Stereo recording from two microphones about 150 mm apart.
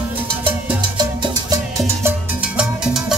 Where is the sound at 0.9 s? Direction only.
30° right (ahead or behind).